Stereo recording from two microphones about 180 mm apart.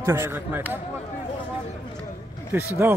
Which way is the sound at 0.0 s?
15° right (ahead or behind).